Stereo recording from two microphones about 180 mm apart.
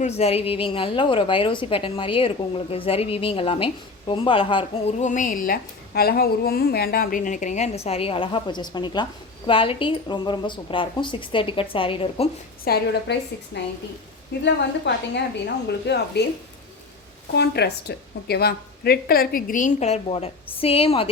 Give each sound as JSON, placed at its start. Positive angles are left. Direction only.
{"t": 0.0, "sound": "a woman's voice", "side_deg": 35}
{"t": 12.6, "sound": "a woman's voice", "side_deg": 65}
{"t": 17.3, "sound": "a woman's voice", "side_deg": 65}